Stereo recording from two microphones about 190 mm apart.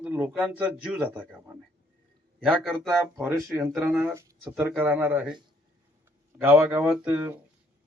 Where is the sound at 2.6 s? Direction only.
Centre (ahead or behind).